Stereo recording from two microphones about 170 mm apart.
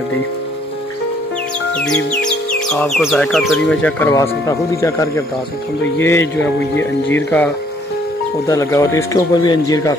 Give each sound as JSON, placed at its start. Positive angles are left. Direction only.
{"t": 2.7, "sound": "speech", "side_deg": 0}
{"t": 4.1, "sound": "speech", "side_deg": 20}